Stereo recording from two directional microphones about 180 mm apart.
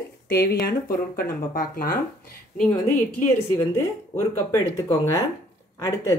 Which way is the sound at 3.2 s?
15° left (ahead or behind).